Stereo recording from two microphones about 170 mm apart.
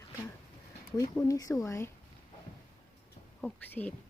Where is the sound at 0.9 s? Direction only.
20° left (ahead or behind).